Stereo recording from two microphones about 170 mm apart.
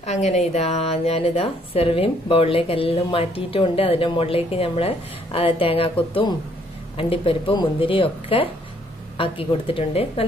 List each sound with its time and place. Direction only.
0.0 s speech: 40° left (ahead or behind)